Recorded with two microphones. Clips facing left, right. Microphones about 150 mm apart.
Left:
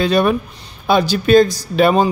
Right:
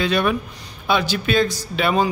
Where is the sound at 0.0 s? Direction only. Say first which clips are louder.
Left 5 dB; 35° left (ahead or behind).